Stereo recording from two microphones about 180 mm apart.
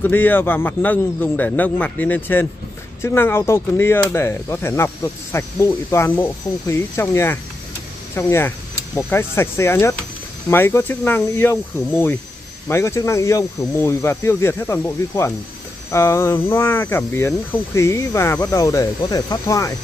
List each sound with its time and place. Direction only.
0.0 s speech: 10° left (ahead or behind)
12.6 s speech: 15° left (ahead or behind)